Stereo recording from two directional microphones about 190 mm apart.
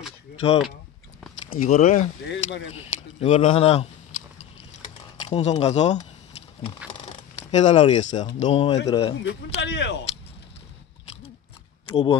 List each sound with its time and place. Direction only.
1.6 s speech: 40° left (ahead or behind)
2.2 s speech: 70° left (ahead or behind)
2.7 s speech: 30° left (ahead or behind)
5.2 s speech: 35° left (ahead or behind)
7.5 s speech: 35° left (ahead or behind)
9.2 s speech: 70° left (ahead or behind)
11.9 s speech: 25° left (ahead or behind)